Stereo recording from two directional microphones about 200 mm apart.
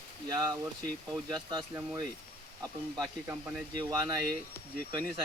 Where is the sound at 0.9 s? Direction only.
Centre (ahead or behind).